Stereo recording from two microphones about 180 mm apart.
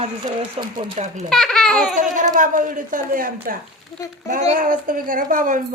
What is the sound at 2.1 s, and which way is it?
A child's voice, 45° right (ahead or behind).